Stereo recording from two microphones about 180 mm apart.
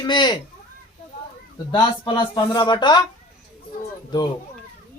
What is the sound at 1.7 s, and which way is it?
Speech, 25° left (ahead or behind).